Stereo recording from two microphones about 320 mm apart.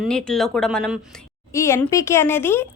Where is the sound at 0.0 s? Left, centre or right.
Centre.